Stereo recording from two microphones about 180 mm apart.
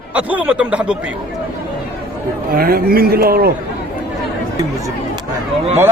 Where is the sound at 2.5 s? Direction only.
55° right (ahead or behind).